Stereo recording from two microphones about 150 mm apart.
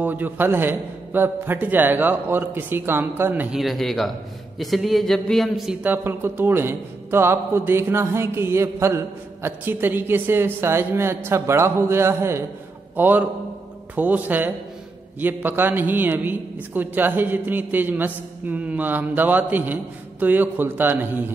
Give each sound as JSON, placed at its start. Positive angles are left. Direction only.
{"t": 0.0, "sound": "speech", "side_deg": -10}
{"t": 3.5, "sound": "a man's voice", "side_deg": 0}